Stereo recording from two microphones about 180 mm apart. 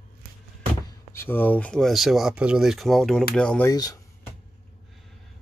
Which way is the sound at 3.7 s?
20° left (ahead or behind).